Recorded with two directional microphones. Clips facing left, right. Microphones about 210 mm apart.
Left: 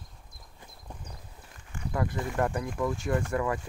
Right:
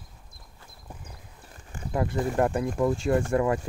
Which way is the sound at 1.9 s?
25° right (ahead or behind).